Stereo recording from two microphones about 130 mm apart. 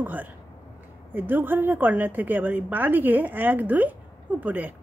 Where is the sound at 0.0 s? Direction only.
15° right (ahead or behind).